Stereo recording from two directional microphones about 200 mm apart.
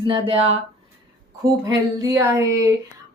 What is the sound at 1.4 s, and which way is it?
Speech, 15° right (ahead or behind).